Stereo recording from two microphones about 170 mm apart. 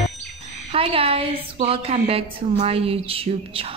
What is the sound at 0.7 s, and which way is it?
A woman's voice, 35° right (ahead or behind).